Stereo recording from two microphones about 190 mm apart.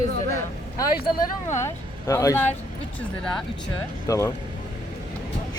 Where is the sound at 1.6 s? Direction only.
15° left (ahead or behind).